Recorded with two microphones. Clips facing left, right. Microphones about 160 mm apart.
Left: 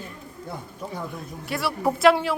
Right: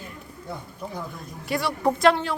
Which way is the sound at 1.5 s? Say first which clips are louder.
Right 1 dB; 5° left (ahead or behind).